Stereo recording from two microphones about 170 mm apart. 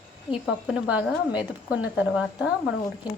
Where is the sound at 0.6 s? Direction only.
5° right (ahead or behind).